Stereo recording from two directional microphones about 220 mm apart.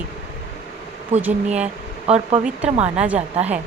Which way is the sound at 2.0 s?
30° right (ahead or behind).